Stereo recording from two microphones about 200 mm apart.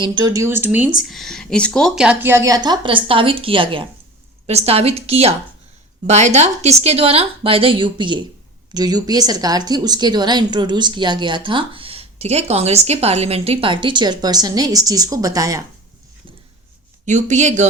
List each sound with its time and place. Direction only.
0.0 s a woman's voice: 20° right (ahead or behind)
17.1 s a woman's voice: 40° right (ahead or behind)